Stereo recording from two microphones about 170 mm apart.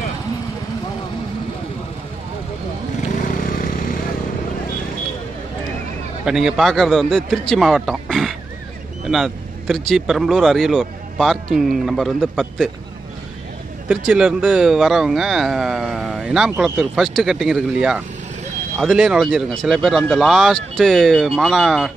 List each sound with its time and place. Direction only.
3.4 s vehicle: 50° left (ahead or behind)
6.2 s speech: 5° right (ahead or behind)
13.8 s speech: 5° right (ahead or behind)